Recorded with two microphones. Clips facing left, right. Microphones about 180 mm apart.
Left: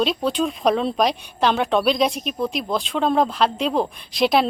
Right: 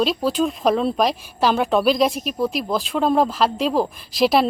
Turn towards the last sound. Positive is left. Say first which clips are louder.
# right 1 dB
turn(degrees=0)  # may be behind; listen again after turning